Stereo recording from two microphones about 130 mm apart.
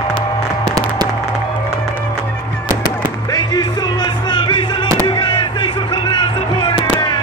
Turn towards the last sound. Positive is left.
turn(degrees=35)  # may be behind; listen again after turning